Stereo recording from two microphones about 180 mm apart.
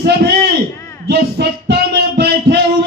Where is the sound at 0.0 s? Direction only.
60° right (ahead or behind).